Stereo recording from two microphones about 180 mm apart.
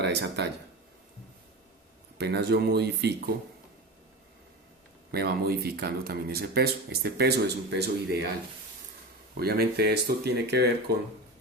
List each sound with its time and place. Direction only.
0.0 s speech: 70° right (ahead or behind)
2.1 s speech: 65° right (ahead or behind)
5.1 s speech: 60° right (ahead or behind)
9.4 s speech: 60° right (ahead or behind)